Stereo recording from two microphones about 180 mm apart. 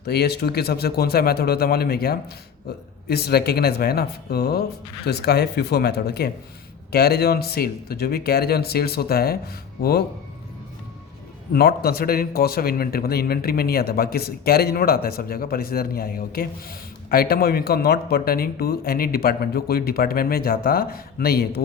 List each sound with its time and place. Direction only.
0.0 s speech: 65° left (ahead or behind)
11.5 s speech: 60° left (ahead or behind)